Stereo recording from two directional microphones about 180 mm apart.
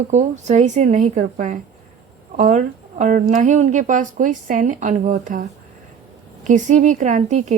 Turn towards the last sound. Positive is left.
turn(degrees=-40)  # may be behind; listen again after turning